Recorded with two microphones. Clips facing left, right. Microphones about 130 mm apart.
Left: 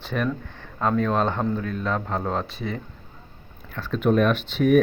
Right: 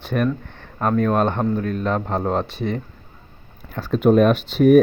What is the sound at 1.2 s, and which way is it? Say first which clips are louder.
Speech: right 4 dB; 20° right (ahead or behind).